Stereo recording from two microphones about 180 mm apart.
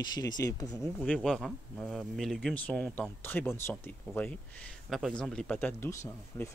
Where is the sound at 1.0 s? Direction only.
5° left (ahead or behind).